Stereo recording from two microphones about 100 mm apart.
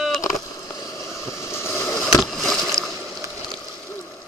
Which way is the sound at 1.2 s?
25° left (ahead or behind).